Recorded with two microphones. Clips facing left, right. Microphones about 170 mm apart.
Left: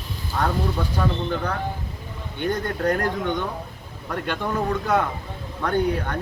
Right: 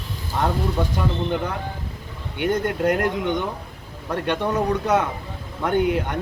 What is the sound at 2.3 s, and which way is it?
Speech, 15° right (ahead or behind).